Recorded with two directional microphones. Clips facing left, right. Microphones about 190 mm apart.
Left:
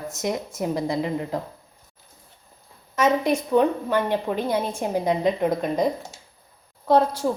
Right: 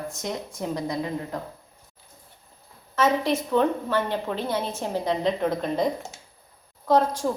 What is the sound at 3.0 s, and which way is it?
A woman's voice, 15° left (ahead or behind).